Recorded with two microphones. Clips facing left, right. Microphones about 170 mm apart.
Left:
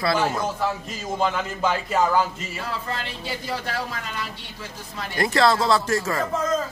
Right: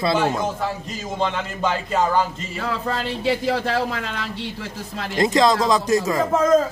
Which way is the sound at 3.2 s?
75° right (ahead or behind).